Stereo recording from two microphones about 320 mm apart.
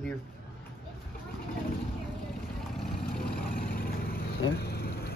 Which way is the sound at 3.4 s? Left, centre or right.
Left.